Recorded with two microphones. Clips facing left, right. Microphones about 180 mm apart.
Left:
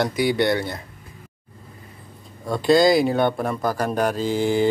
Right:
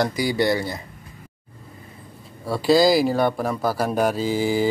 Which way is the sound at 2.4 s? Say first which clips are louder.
Left 1 dB; 5° right (ahead or behind).